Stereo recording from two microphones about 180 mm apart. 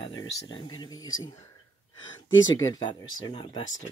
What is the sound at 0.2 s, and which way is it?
Speech, 25° left (ahead or behind).